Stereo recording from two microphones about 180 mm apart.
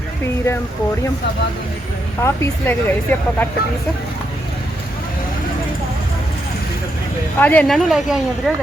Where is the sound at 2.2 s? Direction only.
15° left (ahead or behind).